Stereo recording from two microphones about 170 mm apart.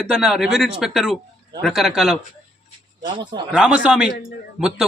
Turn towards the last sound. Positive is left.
turn(degrees=-5)  # may be behind; listen again after turning